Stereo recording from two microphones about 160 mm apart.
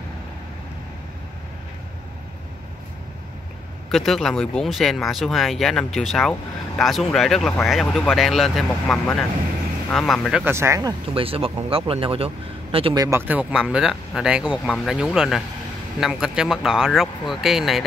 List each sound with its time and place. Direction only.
3.9 s speech: centre (ahead or behind)
10.4 s speech: 15° right (ahead or behind); by 13.0 s 35° right (ahead or behind)
13.0 s speech: 15° right (ahead or behind)